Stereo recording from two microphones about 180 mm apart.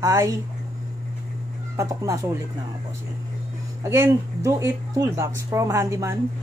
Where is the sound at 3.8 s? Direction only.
15° right (ahead or behind).